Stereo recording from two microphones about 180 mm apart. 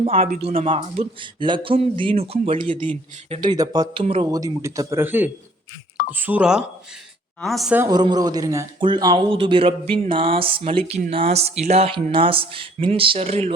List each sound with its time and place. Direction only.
0.0 s speech: 30° right (ahead or behind)
3.6 s speech: 20° right (ahead or behind)
4.0 s speech: 30° right (ahead or behind)
4.3 s a woman's voice: 20° right (ahead or behind); by 7.8 s centre (ahead or behind)
7.8 s speech: 20° right (ahead or behind)